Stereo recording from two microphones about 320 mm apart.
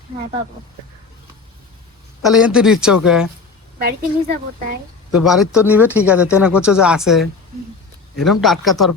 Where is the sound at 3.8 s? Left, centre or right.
Right.